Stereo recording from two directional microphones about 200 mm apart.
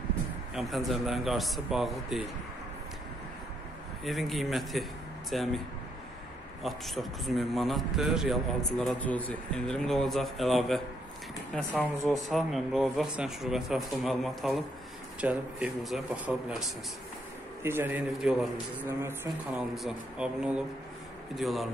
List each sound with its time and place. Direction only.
0.6 s a man's voice: centre (ahead or behind)
4.0 s a man's voice: centre (ahead or behind)
6.6 s a man's voice: centre (ahead or behind)
17.6 s a man's voice: 10° right (ahead or behind)
19.2 s a man's voice: centre (ahead or behind)